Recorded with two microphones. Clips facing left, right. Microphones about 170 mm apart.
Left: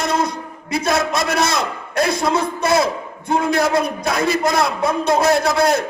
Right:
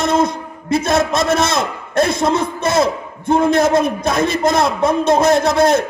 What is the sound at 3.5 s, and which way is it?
A man's voice, 20° right (ahead or behind).